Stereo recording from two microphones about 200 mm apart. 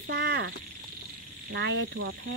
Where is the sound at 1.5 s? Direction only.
60° right (ahead or behind).